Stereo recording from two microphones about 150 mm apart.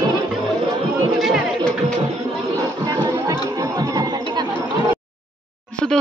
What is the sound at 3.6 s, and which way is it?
Chatter, 25° right (ahead or behind).